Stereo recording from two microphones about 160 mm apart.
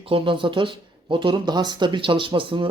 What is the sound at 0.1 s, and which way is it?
Speech, 30° right (ahead or behind).